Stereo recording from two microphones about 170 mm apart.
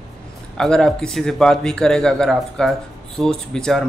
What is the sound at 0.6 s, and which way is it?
Speech, 5° left (ahead or behind).